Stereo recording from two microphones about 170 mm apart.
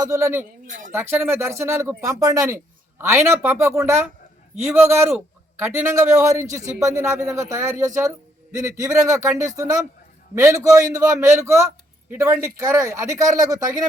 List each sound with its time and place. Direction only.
0.0 s speech: 15° right (ahead or behind)
0.7 s speech: 50° right (ahead or behind)
0.9 s a man's voice: 15° right (ahead or behind)